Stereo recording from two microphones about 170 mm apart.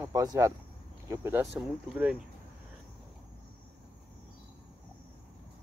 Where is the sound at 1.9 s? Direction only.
5° right (ahead or behind).